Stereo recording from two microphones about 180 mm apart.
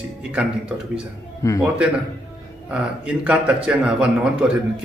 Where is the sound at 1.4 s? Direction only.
15° left (ahead or behind).